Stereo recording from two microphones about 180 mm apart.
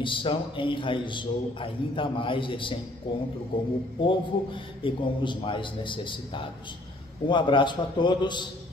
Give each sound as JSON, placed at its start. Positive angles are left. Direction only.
{"t": 0.0, "sound": "a man's voice", "side_deg": 30}